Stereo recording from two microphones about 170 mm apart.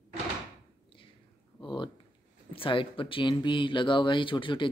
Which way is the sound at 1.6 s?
25° left (ahead or behind).